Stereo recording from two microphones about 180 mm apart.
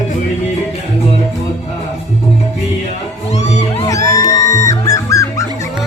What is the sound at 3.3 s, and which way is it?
Music, 40° left (ahead or behind).